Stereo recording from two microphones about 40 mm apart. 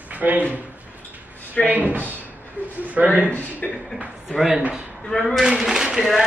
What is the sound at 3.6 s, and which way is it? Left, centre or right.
Speech, left.